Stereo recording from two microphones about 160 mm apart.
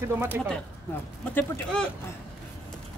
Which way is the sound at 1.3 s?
5° left (ahead or behind).